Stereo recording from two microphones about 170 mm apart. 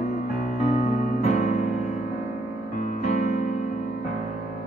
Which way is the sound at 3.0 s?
45° left (ahead or behind).